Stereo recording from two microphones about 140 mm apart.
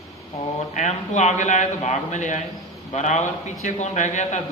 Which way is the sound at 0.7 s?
60° left (ahead or behind).